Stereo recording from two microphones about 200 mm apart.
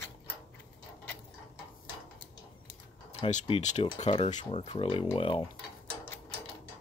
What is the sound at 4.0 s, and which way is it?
Dishes, 30° left (ahead or behind).